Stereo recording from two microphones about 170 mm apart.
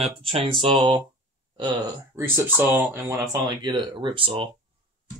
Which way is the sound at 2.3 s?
15° right (ahead or behind).